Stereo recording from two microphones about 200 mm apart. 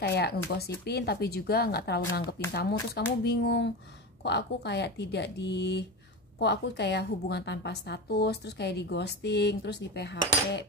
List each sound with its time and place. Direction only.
0.0 s a woman's voice: 55° left (ahead or behind)